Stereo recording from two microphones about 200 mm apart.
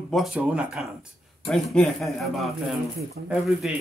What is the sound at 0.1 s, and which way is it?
Speech, 5° right (ahead or behind).